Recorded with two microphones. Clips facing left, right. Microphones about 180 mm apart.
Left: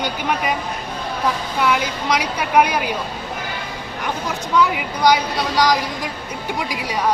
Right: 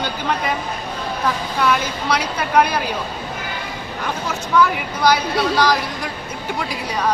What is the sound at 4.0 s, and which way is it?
Speech, 15° left (ahead or behind).